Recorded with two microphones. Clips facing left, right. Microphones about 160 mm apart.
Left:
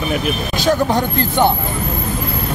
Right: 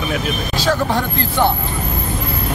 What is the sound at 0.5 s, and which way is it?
Speech, 20° left (ahead or behind).